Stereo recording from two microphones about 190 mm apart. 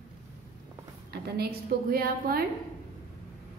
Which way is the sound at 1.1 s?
55° right (ahead or behind).